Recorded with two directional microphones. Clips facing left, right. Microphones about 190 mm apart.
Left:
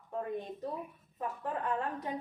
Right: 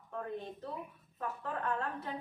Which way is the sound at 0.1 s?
15° left (ahead or behind).